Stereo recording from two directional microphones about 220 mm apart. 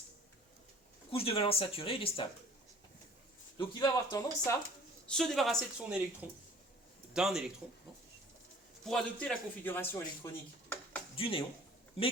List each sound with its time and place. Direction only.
1.1 s speech: 25° left (ahead or behind)
3.6 s speech: 15° left (ahead or behind)
5.0 s a man's voice: centre (ahead or behind)
8.8 s a man's voice: centre (ahead or behind)
11.2 s speech: 25° left (ahead or behind)